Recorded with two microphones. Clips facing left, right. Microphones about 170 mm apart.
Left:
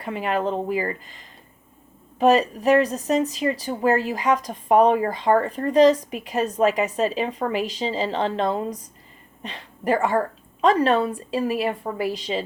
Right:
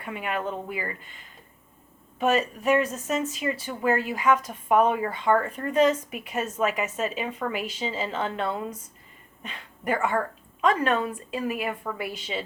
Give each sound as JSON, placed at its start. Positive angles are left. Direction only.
{"t": 0.0, "sound": "speech", "side_deg": 35}
{"t": 2.1, "sound": "speech", "side_deg": 35}